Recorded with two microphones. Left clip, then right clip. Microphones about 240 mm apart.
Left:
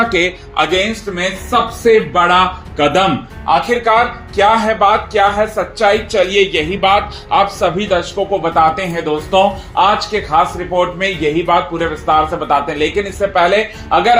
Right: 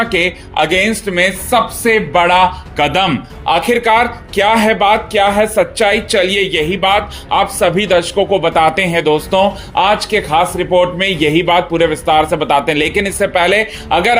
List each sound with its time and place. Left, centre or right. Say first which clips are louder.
0.2 s speech: right 1 dB; right
7.6 s speech: right 3 dB; right